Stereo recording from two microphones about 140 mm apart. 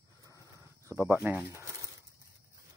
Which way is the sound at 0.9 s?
15° right (ahead or behind).